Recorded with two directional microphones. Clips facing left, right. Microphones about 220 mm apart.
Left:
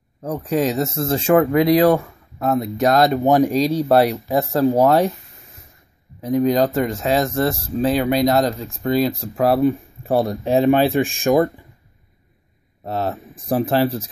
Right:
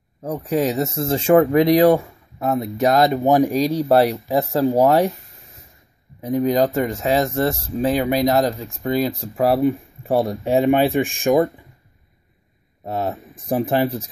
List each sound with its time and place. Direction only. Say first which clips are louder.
0.2 s speech: even; 10° right (ahead or behind)
6.4 s speech: even; 15° right (ahead or behind)
12.8 s speech: left 1 dB; 15° right (ahead or behind)